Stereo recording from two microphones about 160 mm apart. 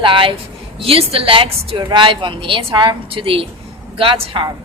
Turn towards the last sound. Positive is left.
turn(degrees=-30)  # may be behind; listen again after turning